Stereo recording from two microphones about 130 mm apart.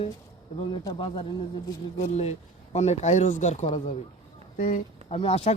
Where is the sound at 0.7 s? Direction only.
40° left (ahead or behind).